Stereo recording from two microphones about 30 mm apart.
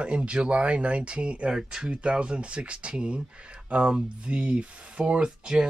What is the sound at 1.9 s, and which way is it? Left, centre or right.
Speech, right.